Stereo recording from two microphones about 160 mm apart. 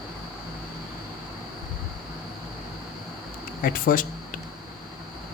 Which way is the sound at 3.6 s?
60° left (ahead or behind).